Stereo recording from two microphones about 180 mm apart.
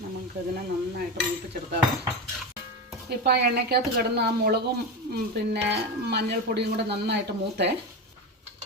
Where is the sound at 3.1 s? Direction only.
65° right (ahead or behind).